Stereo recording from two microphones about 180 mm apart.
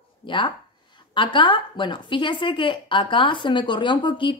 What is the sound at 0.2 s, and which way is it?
A woman's voice, 25° left (ahead or behind).